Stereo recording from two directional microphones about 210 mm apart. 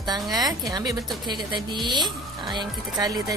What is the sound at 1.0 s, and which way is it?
Speech, centre (ahead or behind).